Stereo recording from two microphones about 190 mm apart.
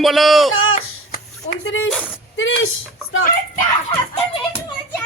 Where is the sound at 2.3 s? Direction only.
80° left.